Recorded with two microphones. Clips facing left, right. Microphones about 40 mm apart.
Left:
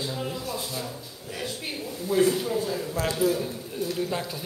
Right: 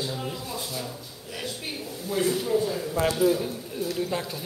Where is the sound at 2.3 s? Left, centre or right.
Centre.